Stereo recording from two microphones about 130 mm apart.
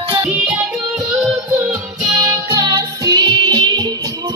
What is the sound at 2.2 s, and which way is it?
Music, 25° right (ahead or behind).